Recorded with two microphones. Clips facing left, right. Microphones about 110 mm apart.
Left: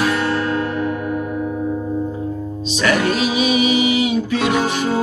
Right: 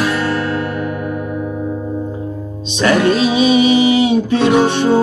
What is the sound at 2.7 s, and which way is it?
Music, 30° right (ahead or behind).